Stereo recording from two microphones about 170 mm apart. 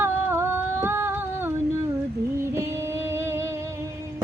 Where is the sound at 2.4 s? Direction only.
15° right (ahead or behind).